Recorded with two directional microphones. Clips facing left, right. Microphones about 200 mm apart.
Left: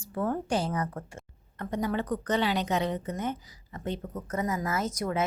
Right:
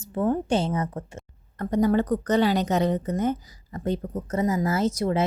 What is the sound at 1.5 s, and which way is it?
A woman's voice, 40° right (ahead or behind).